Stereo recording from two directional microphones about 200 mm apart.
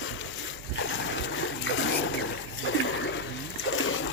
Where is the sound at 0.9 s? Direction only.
70° left (ahead or behind).